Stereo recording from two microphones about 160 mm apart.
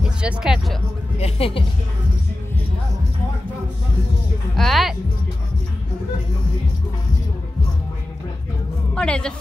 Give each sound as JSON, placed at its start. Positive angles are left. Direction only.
{"t": 0.0, "sound": "speech", "side_deg": -5}
{"t": 1.1, "sound": "speech", "side_deg": 40}
{"t": 4.6, "sound": "speech", "side_deg": 0}
{"t": 8.9, "sound": "a man's voice", "side_deg": 5}